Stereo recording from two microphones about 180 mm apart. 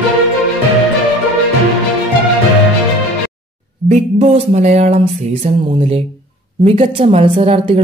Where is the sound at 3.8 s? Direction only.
35° right (ahead or behind).